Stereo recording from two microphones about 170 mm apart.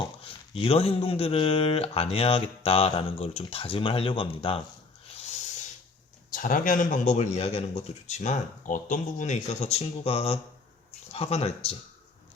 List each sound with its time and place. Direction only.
0.2 s speech: 35° left (ahead or behind)
6.3 s speech: 55° left (ahead or behind); by 11.8 s 35° left (ahead or behind)